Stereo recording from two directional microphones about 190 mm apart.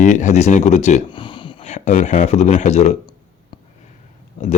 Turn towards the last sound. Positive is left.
turn(degrees=40)  # may be behind; listen again after turning